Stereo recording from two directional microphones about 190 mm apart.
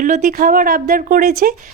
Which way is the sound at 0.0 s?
45° right (ahead or behind).